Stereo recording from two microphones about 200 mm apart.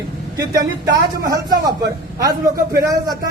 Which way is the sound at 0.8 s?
20° right (ahead or behind).